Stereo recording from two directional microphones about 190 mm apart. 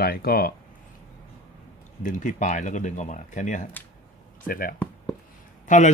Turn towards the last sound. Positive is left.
turn(degrees=40)  # may be behind; listen again after turning